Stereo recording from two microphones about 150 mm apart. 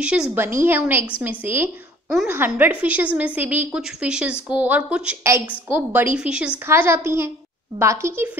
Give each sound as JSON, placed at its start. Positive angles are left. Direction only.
{"t": 0.0, "sound": "a woman's voice", "side_deg": -10}